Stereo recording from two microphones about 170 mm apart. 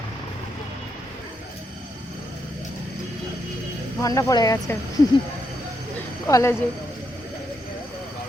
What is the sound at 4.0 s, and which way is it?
Speech, 20° left (ahead or behind).